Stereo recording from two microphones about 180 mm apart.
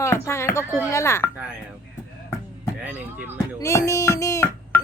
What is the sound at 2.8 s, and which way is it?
Speech, 10° right (ahead or behind).